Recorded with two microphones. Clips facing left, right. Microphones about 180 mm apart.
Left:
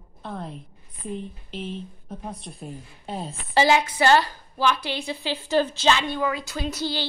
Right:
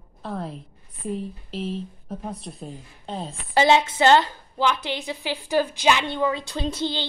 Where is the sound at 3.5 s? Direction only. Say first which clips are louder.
Right 1 dB; 20° right (ahead or behind).